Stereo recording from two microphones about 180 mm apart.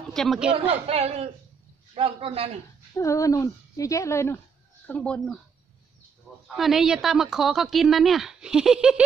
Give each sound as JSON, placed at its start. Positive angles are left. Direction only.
{"t": 0.1, "sound": "a woman's voice", "side_deg": 0}
{"t": 0.8, "sound": "a man's voice", "side_deg": -35}
{"t": 3.0, "sound": "a woman's voice", "side_deg": 15}
{"t": 6.5, "sound": "a woman's voice", "side_deg": 0}